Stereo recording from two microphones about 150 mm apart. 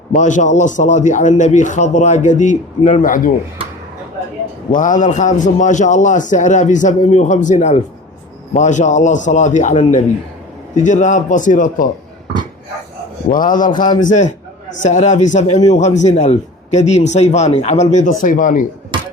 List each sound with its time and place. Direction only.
0.1 s a man's voice: 55° left (ahead or behind)
4.7 s a man's voice: 60° left (ahead or behind)
13.3 s a man's voice: 60° left (ahead or behind)
13.7 s a man's voice: 30° left (ahead or behind)
14.0 s a man's voice: 55° left (ahead or behind)